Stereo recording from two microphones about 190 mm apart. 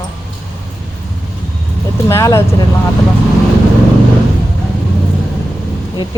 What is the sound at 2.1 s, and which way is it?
Speech, 15° left (ahead or behind).